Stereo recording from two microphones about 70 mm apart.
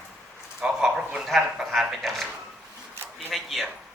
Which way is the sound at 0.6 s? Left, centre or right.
Centre.